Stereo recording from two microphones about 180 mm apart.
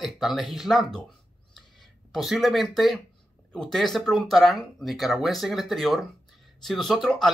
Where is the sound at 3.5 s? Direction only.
5° left (ahead or behind).